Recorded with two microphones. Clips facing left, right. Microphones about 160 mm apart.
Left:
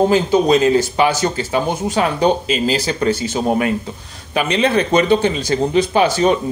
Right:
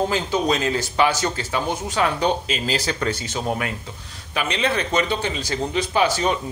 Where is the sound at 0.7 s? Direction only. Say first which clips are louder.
Left 5 dB; 10° left (ahead or behind).